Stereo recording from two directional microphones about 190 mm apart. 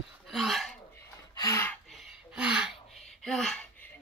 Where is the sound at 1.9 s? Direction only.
Centre (ahead or behind).